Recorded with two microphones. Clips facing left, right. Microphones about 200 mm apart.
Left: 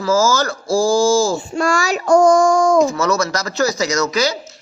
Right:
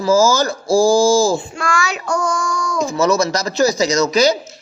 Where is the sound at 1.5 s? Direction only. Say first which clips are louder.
Left 4 dB; 40° left (ahead or behind).